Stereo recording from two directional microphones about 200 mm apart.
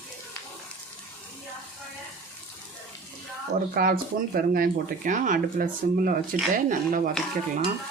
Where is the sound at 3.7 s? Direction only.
45° right (ahead or behind).